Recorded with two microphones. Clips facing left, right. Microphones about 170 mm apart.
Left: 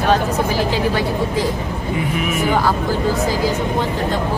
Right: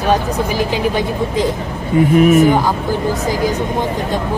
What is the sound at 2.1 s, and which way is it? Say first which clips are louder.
Speech: right 12 dB; 45° right (ahead or behind).